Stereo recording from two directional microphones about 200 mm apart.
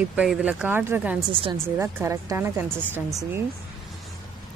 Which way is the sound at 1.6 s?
15° right (ahead or behind).